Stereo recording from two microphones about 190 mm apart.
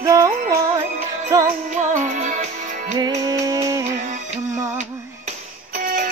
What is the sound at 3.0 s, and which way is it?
Music, 20° right (ahead or behind).